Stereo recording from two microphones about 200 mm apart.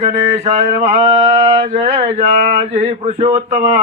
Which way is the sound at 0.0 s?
30° right (ahead or behind).